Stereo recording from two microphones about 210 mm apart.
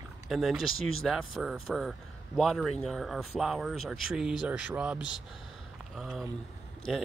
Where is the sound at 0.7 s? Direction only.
75° left (ahead or behind).